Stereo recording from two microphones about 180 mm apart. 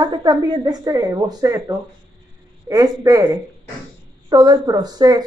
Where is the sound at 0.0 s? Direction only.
25° right (ahead or behind).